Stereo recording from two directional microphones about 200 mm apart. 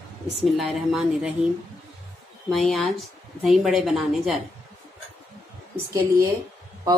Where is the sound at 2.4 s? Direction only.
Centre (ahead or behind).